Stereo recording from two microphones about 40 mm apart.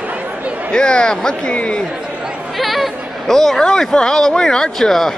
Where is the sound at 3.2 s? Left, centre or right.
Centre.